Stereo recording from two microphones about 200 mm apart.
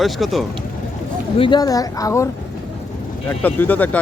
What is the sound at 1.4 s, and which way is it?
Speech, 20° left (ahead or behind).